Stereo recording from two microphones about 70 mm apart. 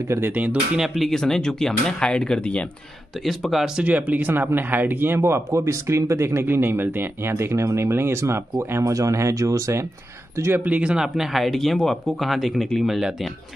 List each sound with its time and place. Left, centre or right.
0.3 s speech: right
0.7 s speech: centre
3.3 s speech: centre
3.8 s speech: right
10.6 s speech: centre